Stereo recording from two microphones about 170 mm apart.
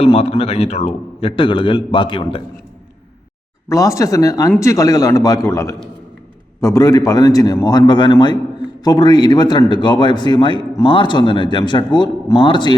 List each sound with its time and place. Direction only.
0.0 s a man's voice: 35° left (ahead or behind)
3.7 s a man's voice: 20° left (ahead or behind)